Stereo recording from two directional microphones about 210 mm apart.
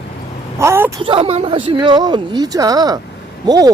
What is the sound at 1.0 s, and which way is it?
Speech, 25° right (ahead or behind).